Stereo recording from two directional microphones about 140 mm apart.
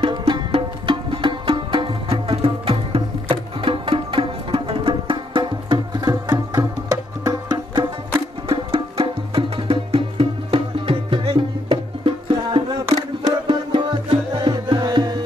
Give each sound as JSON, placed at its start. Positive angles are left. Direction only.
{"t": 0.0, "sound": "music", "side_deg": -35}
{"t": 8.5, "sound": "music", "side_deg": -40}